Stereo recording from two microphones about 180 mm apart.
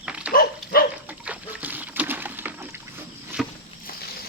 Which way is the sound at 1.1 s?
10° right (ahead or behind).